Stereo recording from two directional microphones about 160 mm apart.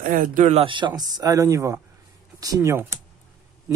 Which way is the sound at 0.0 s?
60° right (ahead or behind).